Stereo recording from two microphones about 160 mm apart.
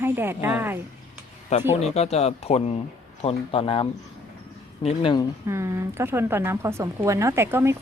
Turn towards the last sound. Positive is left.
turn(degrees=-15)  # may be behind; listen again after turning